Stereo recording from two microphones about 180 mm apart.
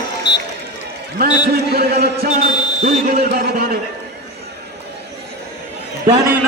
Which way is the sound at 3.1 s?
60° right (ahead or behind).